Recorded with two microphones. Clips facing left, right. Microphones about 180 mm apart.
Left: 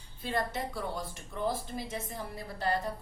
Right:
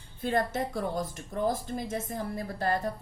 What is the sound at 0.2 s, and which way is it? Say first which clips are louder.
Speech: right 5 dB; 50° right (ahead or behind).